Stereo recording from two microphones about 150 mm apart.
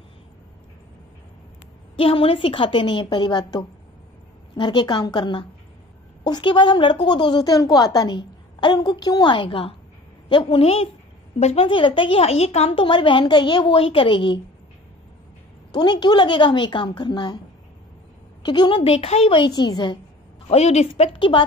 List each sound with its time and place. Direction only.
2.0 s a woman's voice: 40° left (ahead or behind)
15.7 s a woman's voice: 30° left (ahead or behind)
18.4 s a woman's voice: 30° left (ahead or behind)
20.4 s a woman's voice: 45° left (ahead or behind)